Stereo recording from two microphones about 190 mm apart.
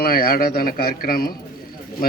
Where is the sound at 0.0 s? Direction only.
50° left (ahead or behind).